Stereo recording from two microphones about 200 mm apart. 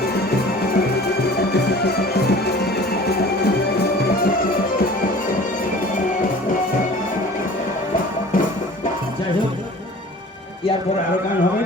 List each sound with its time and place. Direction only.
1.5 s music: 55° left (ahead or behind)